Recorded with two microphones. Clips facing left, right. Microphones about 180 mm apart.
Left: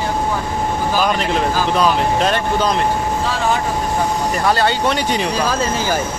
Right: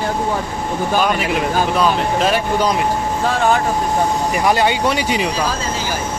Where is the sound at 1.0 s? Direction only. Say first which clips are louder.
Even; 5° right (ahead or behind).